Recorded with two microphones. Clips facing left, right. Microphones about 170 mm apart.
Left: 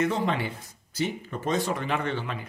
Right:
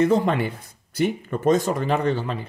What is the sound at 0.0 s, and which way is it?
A woman's voice, 45° right (ahead or behind).